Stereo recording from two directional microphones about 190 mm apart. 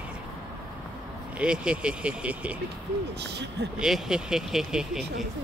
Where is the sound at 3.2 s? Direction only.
65° right (ahead or behind).